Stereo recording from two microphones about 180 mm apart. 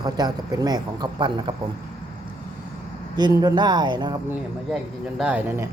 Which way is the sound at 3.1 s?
25° right (ahead or behind).